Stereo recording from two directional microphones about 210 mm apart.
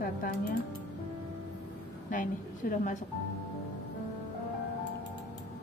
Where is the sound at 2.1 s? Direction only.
40° left (ahead or behind).